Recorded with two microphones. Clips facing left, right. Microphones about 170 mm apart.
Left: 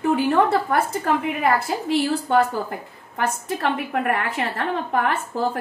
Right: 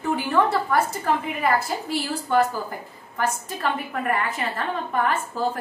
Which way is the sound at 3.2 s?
65° left (ahead or behind).